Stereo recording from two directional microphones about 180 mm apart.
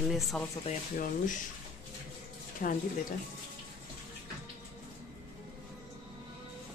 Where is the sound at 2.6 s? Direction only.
50° left (ahead or behind).